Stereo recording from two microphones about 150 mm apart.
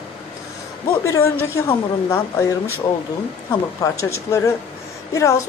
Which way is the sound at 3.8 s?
20° left (ahead or behind).